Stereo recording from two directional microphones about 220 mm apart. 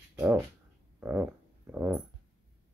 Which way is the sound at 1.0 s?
5° right (ahead or behind).